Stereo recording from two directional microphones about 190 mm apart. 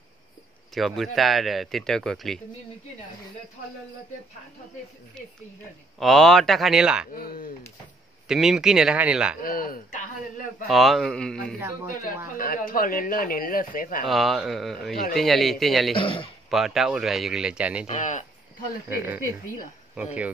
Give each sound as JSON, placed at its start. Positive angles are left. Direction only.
{"t": 0.7, "sound": "speech", "side_deg": 0}
{"t": 5.9, "sound": "speech", "side_deg": 0}
{"t": 7.2, "sound": "speech", "side_deg": 50}
{"t": 8.3, "sound": "speech", "side_deg": -5}
{"t": 9.4, "sound": "speech", "side_deg": 50}
{"t": 10.7, "sound": "speech", "side_deg": 0}
{"t": 11.6, "sound": "speech", "side_deg": -15}
{"t": 12.4, "sound": "speech", "side_deg": 50}
{"t": 14.0, "sound": "speech", "side_deg": 0}
{"t": 15.9, "sound": "speech", "side_deg": 30}
{"t": 16.4, "sound": "speech", "side_deg": 0}
{"t": 17.8, "sound": "speech", "side_deg": 40}
{"t": 18.9, "sound": "speech", "side_deg": -10}